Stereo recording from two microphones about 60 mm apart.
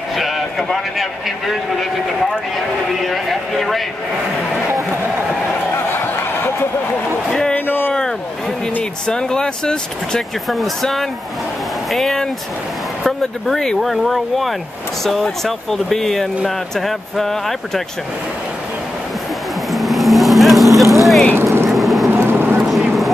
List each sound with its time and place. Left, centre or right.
0.2 s a sound: centre
3.0 s speech: centre
5.9 s a sound: left
9.0 s speech: centre
10.5 s speech: centre
13.7 s speech: centre
19.7 s vehicle: centre
21.4 s vehicle: right
21.6 s vehicle: centre
22.1 s a sound: right